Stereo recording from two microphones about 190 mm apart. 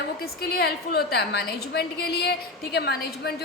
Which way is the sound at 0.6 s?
55° left (ahead or behind).